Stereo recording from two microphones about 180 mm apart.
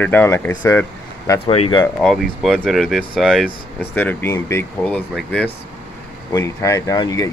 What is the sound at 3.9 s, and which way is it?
Speech, 10° left (ahead or behind).